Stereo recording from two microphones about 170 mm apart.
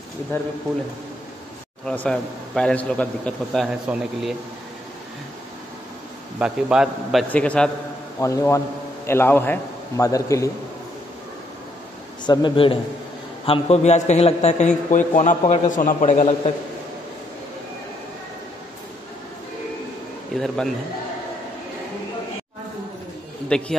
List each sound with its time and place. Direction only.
2.0 s a man's voice: 5° left (ahead or behind)
6.4 s a man's voice: 5° right (ahead or behind)
8.2 s a man's voice: 20° left (ahead or behind)
12.3 s a man's voice: 25° left (ahead or behind)
13.5 s a man's voice: 40° left (ahead or behind)
20.3 s a man's voice: centre (ahead or behind)
23.5 s a man's voice: 5° left (ahead or behind)